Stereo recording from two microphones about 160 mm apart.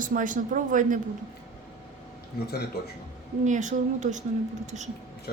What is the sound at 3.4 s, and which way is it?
Speech, 50° right (ahead or behind).